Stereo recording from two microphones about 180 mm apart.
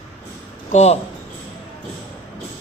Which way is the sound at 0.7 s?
40° left (ahead or behind).